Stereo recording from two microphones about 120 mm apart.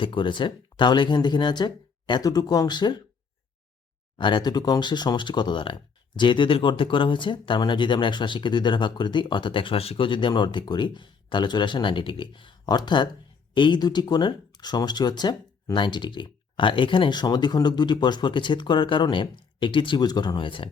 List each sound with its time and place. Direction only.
0.0 s speech: 45° left (ahead or behind)
4.2 s speech: 40° left (ahead or behind)